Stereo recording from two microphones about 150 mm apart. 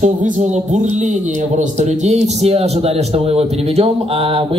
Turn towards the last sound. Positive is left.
turn(degrees=-35)  # may be behind; listen again after turning